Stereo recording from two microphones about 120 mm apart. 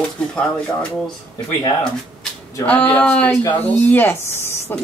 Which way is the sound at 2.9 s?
10° left (ahead or behind).